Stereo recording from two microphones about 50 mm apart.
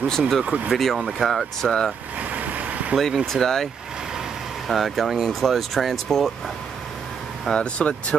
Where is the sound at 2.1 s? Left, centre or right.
Right.